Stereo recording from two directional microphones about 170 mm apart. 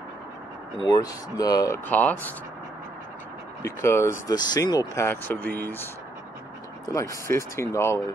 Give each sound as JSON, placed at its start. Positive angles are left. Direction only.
{"t": 0.8, "sound": "speech", "side_deg": 20}
{"t": 1.9, "sound": "speech", "side_deg": 10}
{"t": 3.6, "sound": "speech", "side_deg": 15}
{"t": 6.9, "sound": "speech", "side_deg": 20}